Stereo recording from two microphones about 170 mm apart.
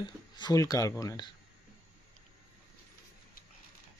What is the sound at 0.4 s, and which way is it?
Speech, 20° left (ahead or behind).